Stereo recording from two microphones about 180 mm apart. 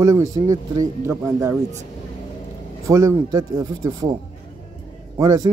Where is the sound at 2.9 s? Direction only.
15° right (ahead or behind).